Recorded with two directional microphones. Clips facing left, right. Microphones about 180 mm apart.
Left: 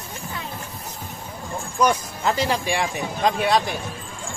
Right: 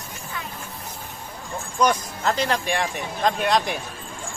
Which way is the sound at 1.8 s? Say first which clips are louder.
Left 1 dB; 10° left (ahead or behind).